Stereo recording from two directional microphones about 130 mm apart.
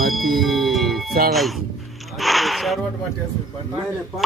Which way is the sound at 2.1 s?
Centre (ahead or behind).